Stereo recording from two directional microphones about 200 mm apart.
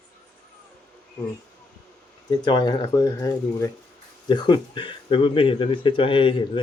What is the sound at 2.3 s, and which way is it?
Speech, 20° left (ahead or behind).